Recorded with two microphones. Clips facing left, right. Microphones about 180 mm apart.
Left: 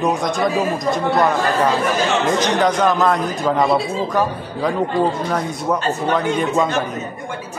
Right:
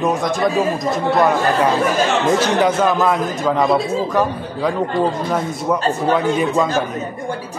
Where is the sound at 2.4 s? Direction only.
10° right (ahead or behind).